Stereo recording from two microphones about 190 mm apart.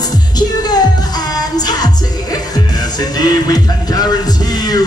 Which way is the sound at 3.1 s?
20° left (ahead or behind).